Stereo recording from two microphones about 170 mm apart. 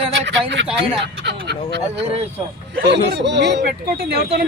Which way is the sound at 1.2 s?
85° right.